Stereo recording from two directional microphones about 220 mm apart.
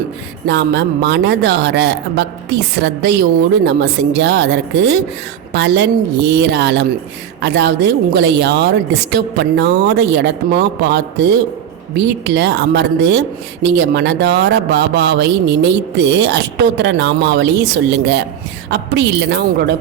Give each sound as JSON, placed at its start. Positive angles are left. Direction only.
{"t": 0.4, "sound": "speech", "side_deg": -50}
{"t": 18.7, "sound": "speech", "side_deg": -50}